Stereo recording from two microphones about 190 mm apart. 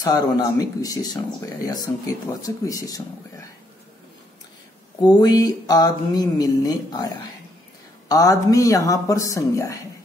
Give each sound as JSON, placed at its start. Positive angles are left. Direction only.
{"t": 0.0, "sound": "speech", "side_deg": 20}
{"t": 5.0, "sound": "speech", "side_deg": 20}